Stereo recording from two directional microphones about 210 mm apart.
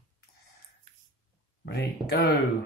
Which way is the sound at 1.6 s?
50° left (ahead or behind).